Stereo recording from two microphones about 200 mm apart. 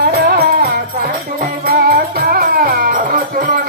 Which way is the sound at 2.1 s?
45° right (ahead or behind).